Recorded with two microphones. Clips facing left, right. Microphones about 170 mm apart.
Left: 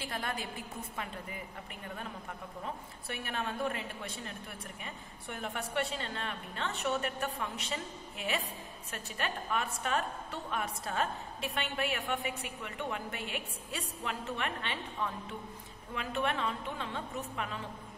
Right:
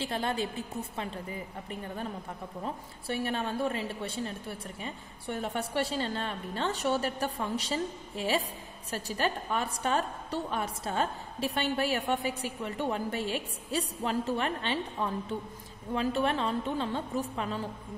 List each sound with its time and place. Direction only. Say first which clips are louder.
0.0 s a woman's voice: right 7 dB; 30° right (ahead or behind)